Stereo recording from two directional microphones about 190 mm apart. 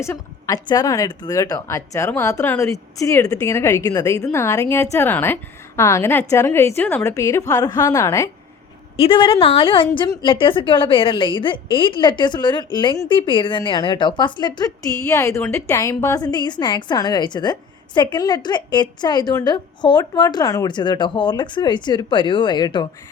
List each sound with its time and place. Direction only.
0.0 s a woman's voice: 15° left (ahead or behind)
9.0 s a woman's voice: 25° left (ahead or behind)